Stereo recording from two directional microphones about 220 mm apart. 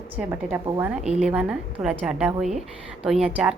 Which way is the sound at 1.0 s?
30° right (ahead or behind).